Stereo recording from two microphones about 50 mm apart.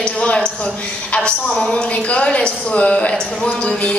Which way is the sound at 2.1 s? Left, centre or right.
Left.